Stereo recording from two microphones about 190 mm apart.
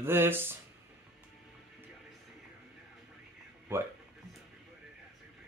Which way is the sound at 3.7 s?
10° right (ahead or behind).